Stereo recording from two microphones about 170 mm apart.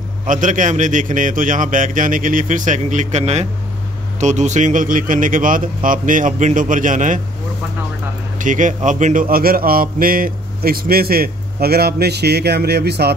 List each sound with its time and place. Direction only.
0.3 s speech: 50° right (ahead or behind)
8.4 s speech: 50° right (ahead or behind); by 13.1 s 75° right (ahead or behind)